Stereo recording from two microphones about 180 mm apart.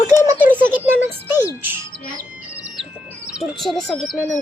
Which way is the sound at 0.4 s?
10° right (ahead or behind).